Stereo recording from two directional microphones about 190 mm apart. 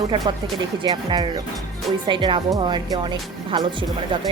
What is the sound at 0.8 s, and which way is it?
Speech, 25° right (ahead or behind).